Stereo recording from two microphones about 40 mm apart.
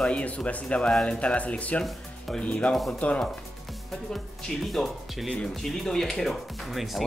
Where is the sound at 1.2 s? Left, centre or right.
Left.